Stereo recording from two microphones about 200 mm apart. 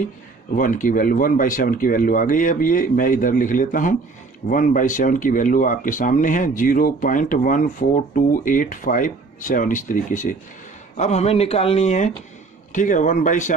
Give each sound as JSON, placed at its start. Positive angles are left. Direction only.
{"t": 0.6, "sound": "speech", "side_deg": 40}